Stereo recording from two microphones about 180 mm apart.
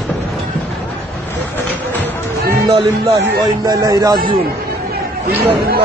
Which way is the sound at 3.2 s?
15° right (ahead or behind).